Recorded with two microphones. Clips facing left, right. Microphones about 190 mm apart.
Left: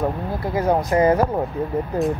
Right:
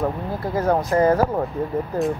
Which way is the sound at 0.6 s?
10° left (ahead or behind).